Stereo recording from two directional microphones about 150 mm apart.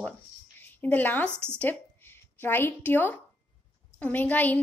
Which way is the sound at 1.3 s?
15° right (ahead or behind).